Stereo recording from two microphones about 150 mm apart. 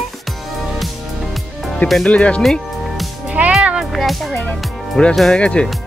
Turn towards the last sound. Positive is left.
turn(degrees=5)  # may be behind; listen again after turning